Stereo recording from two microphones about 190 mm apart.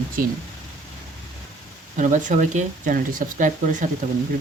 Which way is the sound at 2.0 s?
40° right (ahead or behind).